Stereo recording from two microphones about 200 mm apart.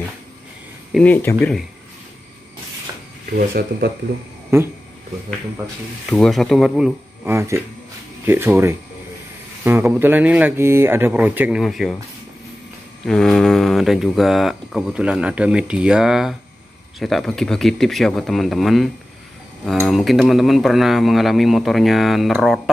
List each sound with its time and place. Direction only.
0.9 s speech: 10° left (ahead or behind)
3.3 s speech: 50° right (ahead or behind)
6.0 s speech: centre (ahead or behind)
7.2 s speech: 15° right (ahead or behind)
13.0 s speech: 5° left (ahead or behind)
19.9 s speech: centre (ahead or behind)